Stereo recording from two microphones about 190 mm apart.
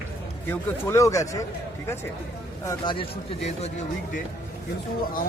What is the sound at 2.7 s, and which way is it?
Speech, 25° left (ahead or behind).